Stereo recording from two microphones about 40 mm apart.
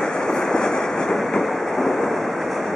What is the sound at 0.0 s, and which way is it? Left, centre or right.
Train, centre.